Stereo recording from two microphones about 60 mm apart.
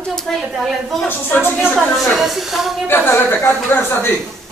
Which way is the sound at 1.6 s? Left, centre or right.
Centre.